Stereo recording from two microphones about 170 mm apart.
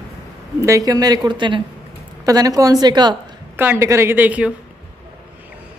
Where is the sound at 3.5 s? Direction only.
15° right (ahead or behind).